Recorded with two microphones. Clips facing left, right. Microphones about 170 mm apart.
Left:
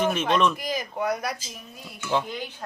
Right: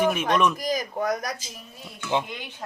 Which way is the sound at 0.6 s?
40° right (ahead or behind).